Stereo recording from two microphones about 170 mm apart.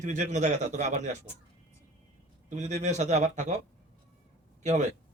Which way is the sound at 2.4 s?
45° right (ahead or behind).